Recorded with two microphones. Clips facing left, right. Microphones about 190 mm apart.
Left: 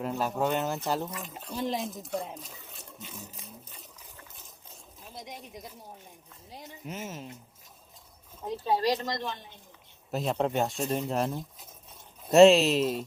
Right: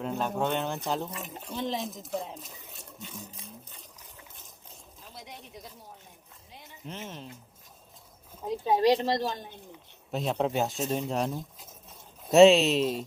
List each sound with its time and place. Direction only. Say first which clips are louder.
0.0 s speech: left 1 dB; 5° left (ahead or behind)
6.8 s speech: left 1 dB; 5° left (ahead or behind)
8.4 s a woman's voice: right 4 dB; 15° right (ahead or behind); by 9.5 s 40° right (ahead or behind)
10.1 s speech: even; centre (ahead or behind)